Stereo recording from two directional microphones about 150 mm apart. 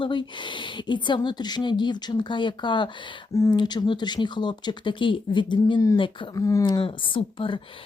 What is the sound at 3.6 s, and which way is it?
Speech, 30° left (ahead or behind).